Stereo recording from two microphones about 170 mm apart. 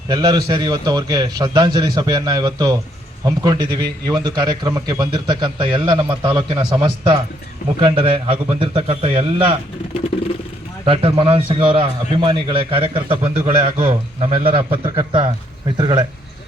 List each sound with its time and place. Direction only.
0.1 s a man's voice: 25° right (ahead or behind)
10.8 s a man's voice: 35° right (ahead or behind)